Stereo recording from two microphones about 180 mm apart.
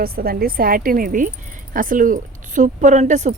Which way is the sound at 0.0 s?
55° right (ahead or behind).